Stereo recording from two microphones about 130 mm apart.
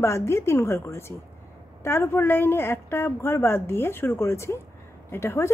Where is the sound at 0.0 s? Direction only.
20° left (ahead or behind).